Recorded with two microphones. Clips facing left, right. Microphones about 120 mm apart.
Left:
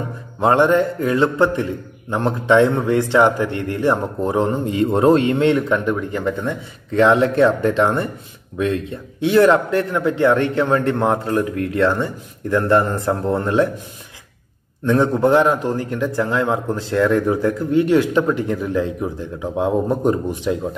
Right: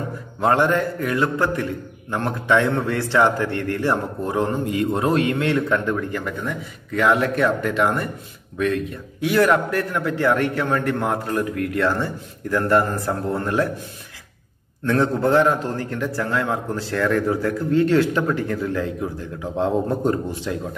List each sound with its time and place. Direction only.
0.4 s a man's voice: 20° left (ahead or behind)
14.9 s a man's voice: 15° left (ahead or behind)